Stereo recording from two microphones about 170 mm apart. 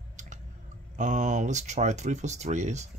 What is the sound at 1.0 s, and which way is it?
Speech, 45° right (ahead or behind).